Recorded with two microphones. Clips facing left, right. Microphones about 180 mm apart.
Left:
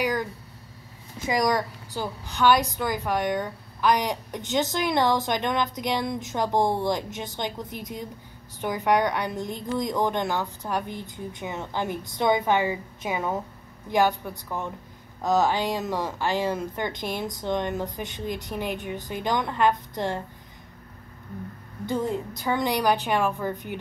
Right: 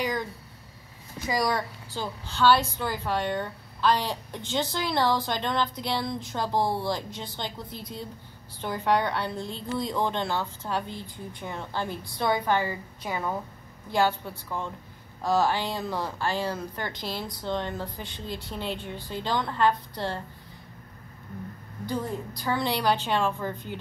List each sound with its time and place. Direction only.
0.0 s a sound: 10° left (ahead or behind)
1.2 s a woman's voice: 20° left (ahead or behind)
21.8 s a woman's voice: 20° left (ahead or behind)